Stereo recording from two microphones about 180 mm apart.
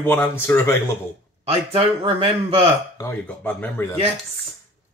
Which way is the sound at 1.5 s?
30° right (ahead or behind).